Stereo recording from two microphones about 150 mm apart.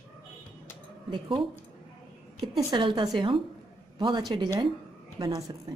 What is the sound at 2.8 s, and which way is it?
Speech, 35° right (ahead or behind).